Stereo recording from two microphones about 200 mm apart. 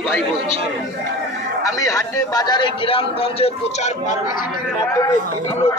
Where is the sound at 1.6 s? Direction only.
15° left (ahead or behind).